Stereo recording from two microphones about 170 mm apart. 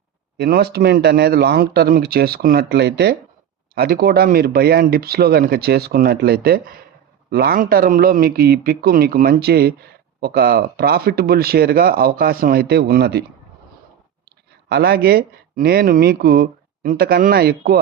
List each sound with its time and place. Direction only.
0.3 s speech: 70° right (ahead or behind)
3.8 s speech: 60° right (ahead or behind)
14.7 s speech: 65° right (ahead or behind)